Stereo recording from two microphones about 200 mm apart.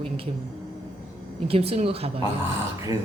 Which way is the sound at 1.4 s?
30° right (ahead or behind).